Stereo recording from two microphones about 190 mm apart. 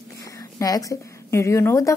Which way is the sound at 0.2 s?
20° left (ahead or behind).